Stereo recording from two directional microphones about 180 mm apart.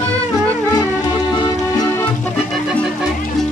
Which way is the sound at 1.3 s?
25° left (ahead or behind).